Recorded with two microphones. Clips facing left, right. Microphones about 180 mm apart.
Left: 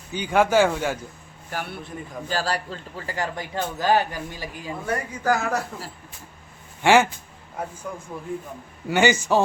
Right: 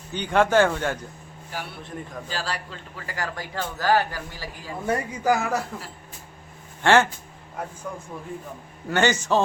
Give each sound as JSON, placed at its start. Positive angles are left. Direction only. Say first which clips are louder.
{"t": 0.1, "sound": "speech", "louder": "left 1 dB", "side_deg": 5}
{"t": 1.5, "sound": "a man's voice", "louder": "left 3 dB", "side_deg": 55}
{"t": 2.3, "sound": "a man's voice", "louder": "left 6 dB", "side_deg": 40}
{"t": 4.9, "sound": "speech", "louder": "right 1 dB", "side_deg": -10}
{"t": 6.8, "sound": "speech", "louder": "left 1 dB", "side_deg": 10}
{"t": 8.9, "sound": "speech", "louder": "left 2 dB", "side_deg": 10}